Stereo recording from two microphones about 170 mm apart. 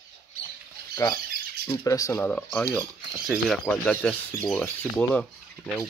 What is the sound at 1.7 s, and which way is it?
Speech, 20° left (ahead or behind).